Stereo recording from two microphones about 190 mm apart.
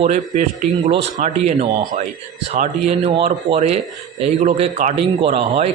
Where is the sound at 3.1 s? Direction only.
30° right (ahead or behind).